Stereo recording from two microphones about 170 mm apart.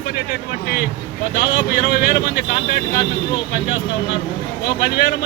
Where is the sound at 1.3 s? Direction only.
70° left (ahead or behind).